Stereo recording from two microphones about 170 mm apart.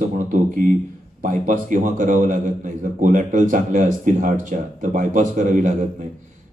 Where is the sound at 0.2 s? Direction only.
50° right (ahead or behind).